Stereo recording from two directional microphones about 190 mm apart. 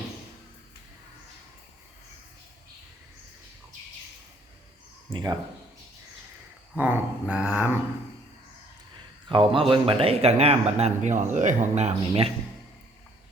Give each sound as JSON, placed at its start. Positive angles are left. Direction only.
{"t": 5.1, "sound": "speech", "side_deg": -20}
{"t": 6.7, "sound": "a sound", "side_deg": -10}
{"t": 9.3, "sound": "speech", "side_deg": -30}